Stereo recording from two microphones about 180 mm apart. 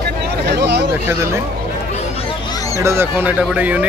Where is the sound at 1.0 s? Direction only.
15° right (ahead or behind).